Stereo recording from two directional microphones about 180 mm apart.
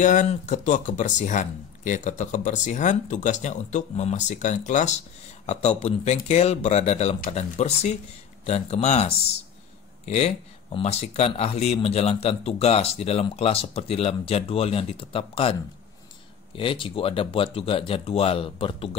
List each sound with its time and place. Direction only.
0.0 s speech: 45° left (ahead or behind)
16.5 s speech: 30° left (ahead or behind)